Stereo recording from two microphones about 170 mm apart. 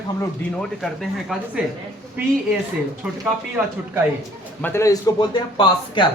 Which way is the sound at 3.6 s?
10° right (ahead or behind).